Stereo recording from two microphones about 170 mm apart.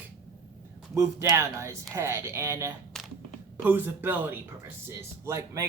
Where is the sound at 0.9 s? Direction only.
15° right (ahead or behind).